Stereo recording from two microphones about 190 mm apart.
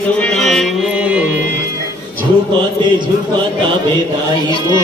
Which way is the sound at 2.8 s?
25° right (ahead or behind).